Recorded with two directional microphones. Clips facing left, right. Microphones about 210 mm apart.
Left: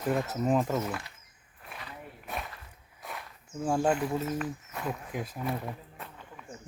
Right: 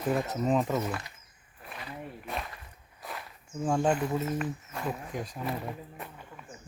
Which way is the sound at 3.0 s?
Centre (ahead or behind).